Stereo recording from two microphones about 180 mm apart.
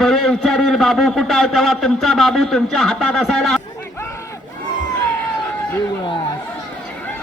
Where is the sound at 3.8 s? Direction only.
15° left (ahead or behind).